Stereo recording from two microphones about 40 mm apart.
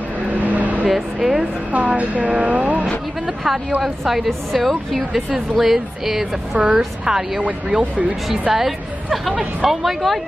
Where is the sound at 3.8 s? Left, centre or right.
Centre.